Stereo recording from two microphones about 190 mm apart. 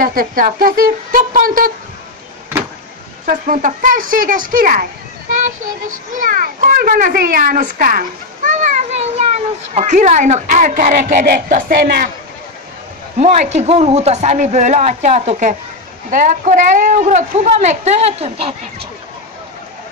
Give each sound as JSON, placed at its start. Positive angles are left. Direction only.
{"t": 0.0, "sound": "a child's voice", "side_deg": -45}
{"t": 3.3, "sound": "a child's voice", "side_deg": -45}
{"t": 5.9, "sound": "a child's voice", "side_deg": -45}
{"t": 13.2, "sound": "speech", "side_deg": -35}